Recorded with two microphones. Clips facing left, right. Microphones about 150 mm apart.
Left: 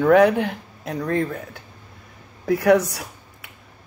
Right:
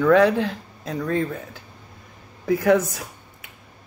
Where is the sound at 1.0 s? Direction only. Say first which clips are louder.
Left 1 dB; 45° left (ahead or behind).